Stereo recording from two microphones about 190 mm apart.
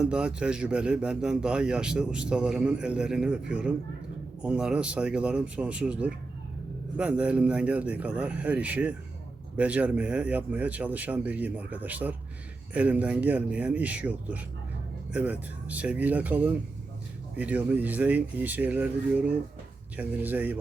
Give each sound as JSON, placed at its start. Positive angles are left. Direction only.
{"t": 0.0, "sound": "a man's voice", "side_deg": -5}